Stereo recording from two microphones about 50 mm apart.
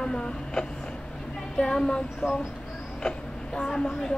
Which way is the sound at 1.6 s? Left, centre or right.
Centre.